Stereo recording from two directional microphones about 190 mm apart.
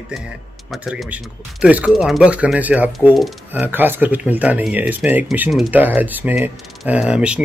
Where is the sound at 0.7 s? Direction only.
Centre (ahead or behind).